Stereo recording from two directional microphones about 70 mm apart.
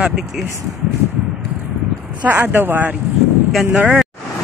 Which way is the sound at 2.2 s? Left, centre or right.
Right.